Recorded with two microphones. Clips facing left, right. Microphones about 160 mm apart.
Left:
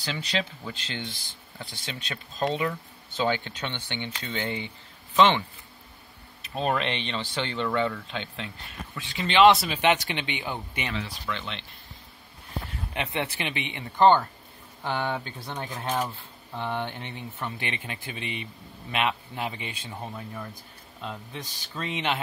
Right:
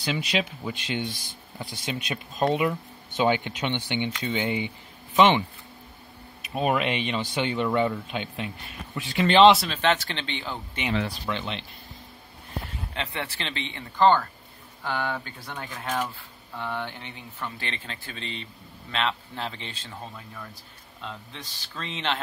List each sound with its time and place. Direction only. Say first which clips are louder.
0.0 s speech: right 3 dB; 15° right (ahead or behind)
6.4 s speech: right 2 dB; 10° right (ahead or behind)
9.7 s speech: left 1 dB; 15° left (ahead or behind)
11.2 s speech: right 3 dB; 25° right (ahead or behind)
12.9 s speech: left 3 dB; 20° left (ahead or behind)